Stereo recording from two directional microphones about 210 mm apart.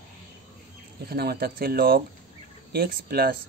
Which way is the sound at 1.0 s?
50° right (ahead or behind).